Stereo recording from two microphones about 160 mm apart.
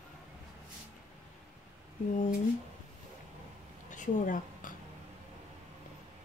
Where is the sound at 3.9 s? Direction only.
55° left (ahead or behind).